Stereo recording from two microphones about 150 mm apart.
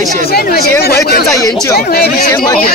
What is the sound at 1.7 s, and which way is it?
Speech, 90° left.